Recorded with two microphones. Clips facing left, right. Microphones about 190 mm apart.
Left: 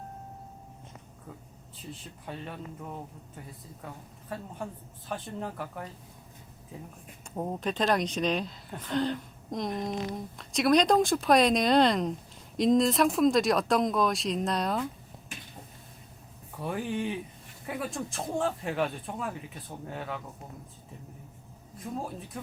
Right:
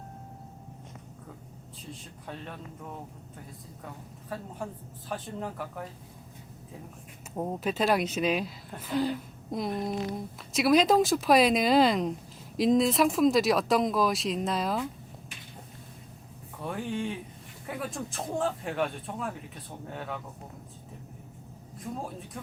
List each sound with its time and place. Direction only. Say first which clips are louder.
1.8 s speech: left 1 dB; centre (ahead or behind)
4.3 s speech: even; centre (ahead or behind)
7.3 s speech: right 1 dB; 5° right (ahead or behind)
16.6 s speech: left 1 dB; 5° left (ahead or behind)